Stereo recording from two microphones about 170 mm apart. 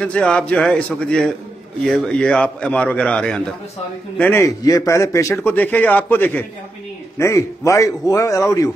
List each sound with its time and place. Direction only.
0.0 s a man's voice: 5° left (ahead or behind)